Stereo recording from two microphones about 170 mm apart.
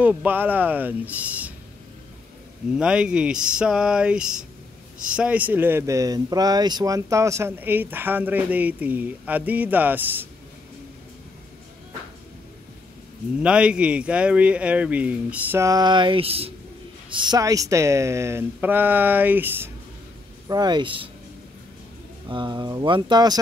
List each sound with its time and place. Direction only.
0.0 s speech: 10° right (ahead or behind)
2.7 s speech: 5° right (ahead or behind)
13.4 s speech: 5° right (ahead or behind)
20.4 s speech: 25° right (ahead or behind)
22.3 s speech: 25° right (ahead or behind)